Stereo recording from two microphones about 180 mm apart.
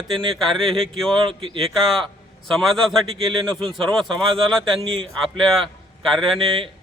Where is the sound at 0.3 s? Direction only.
Centre (ahead or behind).